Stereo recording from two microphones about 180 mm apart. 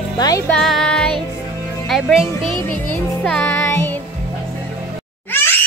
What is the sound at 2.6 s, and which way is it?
Music, 10° left (ahead or behind).